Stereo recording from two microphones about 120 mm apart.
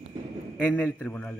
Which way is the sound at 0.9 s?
10° left (ahead or behind).